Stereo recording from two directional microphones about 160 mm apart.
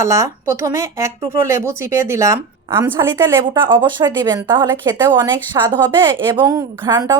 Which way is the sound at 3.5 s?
30° right (ahead or behind).